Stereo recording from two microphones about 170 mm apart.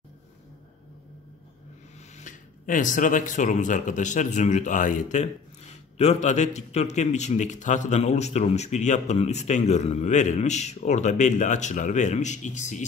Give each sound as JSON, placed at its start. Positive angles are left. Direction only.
{"t": 2.1, "sound": "speech", "side_deg": 50}